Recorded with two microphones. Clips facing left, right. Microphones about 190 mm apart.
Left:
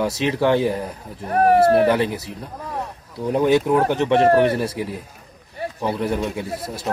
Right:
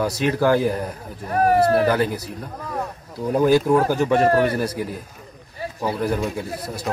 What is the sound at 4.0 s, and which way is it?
Speech, 25° left (ahead or behind).